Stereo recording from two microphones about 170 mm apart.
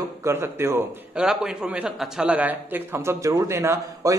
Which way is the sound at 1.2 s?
5° right (ahead or behind).